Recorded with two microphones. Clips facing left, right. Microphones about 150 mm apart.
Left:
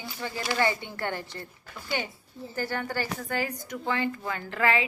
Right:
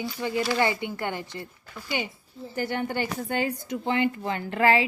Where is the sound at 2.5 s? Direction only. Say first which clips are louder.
Right 3 dB; 20° right (ahead or behind).